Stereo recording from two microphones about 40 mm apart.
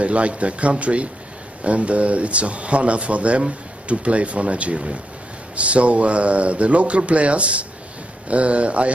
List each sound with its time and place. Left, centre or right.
0.0 s speech: right